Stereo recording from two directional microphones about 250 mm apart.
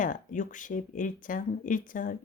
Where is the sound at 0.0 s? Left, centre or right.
Left.